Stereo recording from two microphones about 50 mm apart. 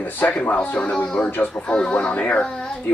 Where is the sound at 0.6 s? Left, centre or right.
Left.